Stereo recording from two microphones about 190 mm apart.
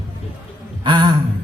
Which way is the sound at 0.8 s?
25° right (ahead or behind).